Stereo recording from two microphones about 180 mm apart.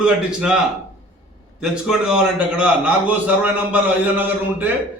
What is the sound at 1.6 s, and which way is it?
A man's voice, 5° right (ahead or behind).